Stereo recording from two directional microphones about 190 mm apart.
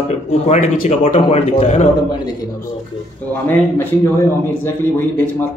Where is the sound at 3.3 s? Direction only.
10° left (ahead or behind).